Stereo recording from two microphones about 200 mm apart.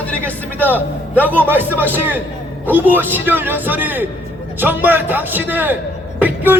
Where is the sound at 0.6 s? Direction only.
10° right (ahead or behind).